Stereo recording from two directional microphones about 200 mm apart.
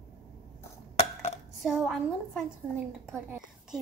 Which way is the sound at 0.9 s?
30° left (ahead or behind).